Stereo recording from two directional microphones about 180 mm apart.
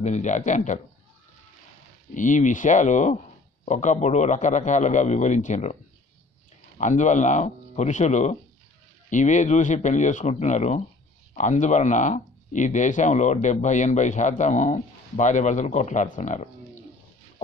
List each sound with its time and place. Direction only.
0.0 s speech: 40° left (ahead or behind)
2.1 s a man's voice: 45° left (ahead or behind)
6.8 s a man's voice: 40° left (ahead or behind)